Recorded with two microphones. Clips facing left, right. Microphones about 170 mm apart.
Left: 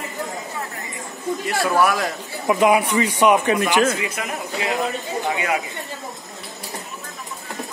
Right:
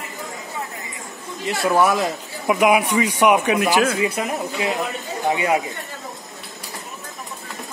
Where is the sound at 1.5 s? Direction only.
20° right (ahead or behind).